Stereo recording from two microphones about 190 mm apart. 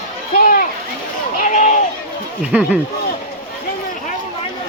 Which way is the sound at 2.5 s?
5° right (ahead or behind).